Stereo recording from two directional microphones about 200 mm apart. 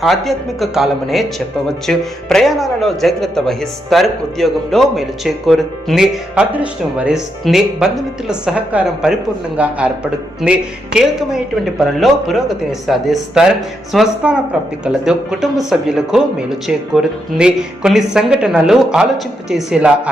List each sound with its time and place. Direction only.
0.0 s speech: centre (ahead or behind)